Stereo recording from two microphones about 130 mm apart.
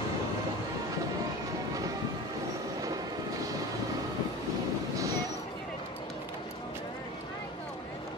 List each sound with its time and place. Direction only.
4.9 s vehicle: 25° right (ahead or behind)